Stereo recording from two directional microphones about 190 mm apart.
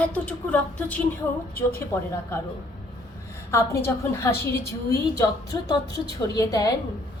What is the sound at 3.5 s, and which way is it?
A woman's voice, 15° left (ahead or behind).